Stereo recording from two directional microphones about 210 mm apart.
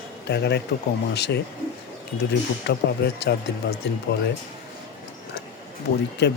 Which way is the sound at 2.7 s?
55° left (ahead or behind).